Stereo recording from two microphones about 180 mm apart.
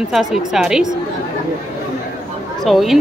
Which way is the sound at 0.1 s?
Centre (ahead or behind).